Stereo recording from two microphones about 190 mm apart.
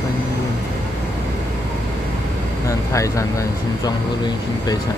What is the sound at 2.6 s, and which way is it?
Vehicle, 15° left (ahead or behind).